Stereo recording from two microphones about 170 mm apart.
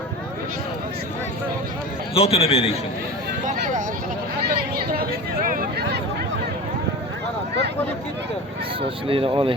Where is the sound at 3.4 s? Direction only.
50° right (ahead or behind).